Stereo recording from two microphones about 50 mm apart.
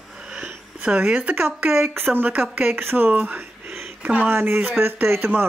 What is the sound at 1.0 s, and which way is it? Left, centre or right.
Speech, right.